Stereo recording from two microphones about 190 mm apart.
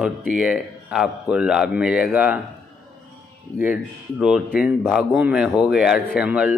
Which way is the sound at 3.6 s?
5° right (ahead or behind).